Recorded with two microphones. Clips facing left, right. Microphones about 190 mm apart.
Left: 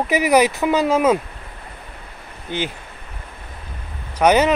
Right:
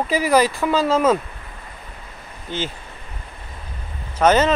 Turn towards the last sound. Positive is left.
turn(degrees=15)  # may be behind; listen again after turning